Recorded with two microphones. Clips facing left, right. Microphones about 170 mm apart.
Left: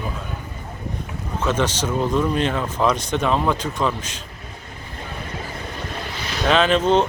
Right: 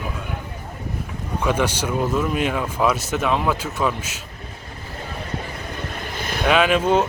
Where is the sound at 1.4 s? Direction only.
10° right (ahead or behind).